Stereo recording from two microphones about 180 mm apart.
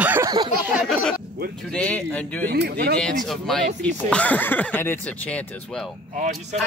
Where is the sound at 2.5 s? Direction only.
60° right (ahead or behind).